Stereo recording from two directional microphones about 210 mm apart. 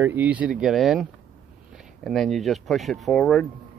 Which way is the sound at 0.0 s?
10° right (ahead or behind).